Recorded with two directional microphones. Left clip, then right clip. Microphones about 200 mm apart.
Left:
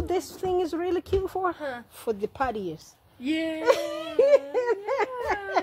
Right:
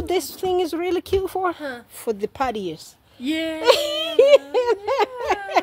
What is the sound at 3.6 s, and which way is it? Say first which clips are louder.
Speech: right 8 dB; 35° right (ahead or behind).